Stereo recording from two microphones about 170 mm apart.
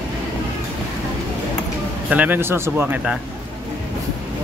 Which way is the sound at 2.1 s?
10° right (ahead or behind).